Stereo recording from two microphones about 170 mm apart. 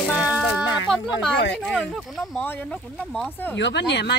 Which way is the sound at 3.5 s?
90° left.